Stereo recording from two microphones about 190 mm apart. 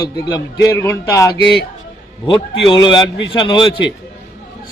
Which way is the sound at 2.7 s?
25° left (ahead or behind).